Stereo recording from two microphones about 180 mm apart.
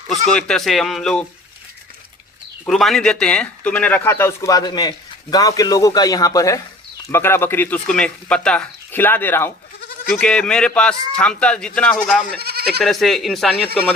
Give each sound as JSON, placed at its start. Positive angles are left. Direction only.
{"t": 0.1, "sound": "a man's voice", "side_deg": 5}
{"t": 2.6, "sound": "a man's voice", "side_deg": 0}
{"t": 12.4, "sound": "speech", "side_deg": -60}
{"t": 12.8, "sound": "a man's voice", "side_deg": 0}